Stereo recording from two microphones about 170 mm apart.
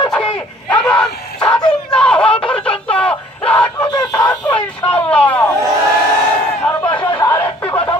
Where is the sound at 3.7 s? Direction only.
25° left (ahead or behind).